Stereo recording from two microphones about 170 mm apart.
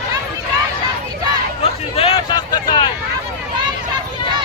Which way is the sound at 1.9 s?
35° left (ahead or behind).